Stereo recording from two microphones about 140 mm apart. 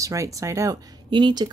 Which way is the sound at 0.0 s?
25° right (ahead or behind).